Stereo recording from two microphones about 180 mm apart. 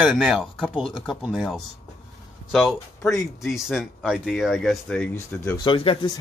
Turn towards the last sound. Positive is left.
turn(degrees=30)  # may be behind; listen again after turning